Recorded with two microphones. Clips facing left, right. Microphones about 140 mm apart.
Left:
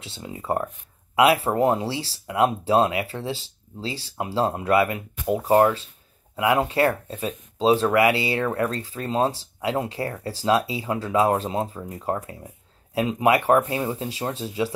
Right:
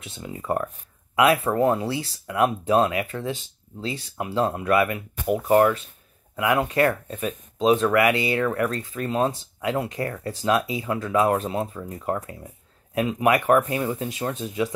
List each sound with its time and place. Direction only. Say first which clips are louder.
0.0 s speech: right 1 dB; 25° left (ahead or behind)